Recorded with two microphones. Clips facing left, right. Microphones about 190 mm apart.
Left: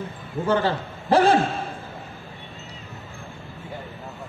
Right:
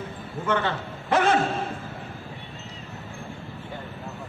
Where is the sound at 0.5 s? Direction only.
35° left (ahead or behind).